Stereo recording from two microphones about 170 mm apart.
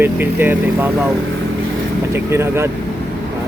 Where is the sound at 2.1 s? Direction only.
15° right (ahead or behind).